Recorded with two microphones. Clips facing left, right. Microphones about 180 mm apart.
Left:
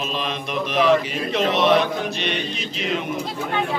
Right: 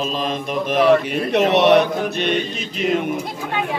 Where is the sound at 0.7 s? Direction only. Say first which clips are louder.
Right 3 dB; 50° right (ahead or behind).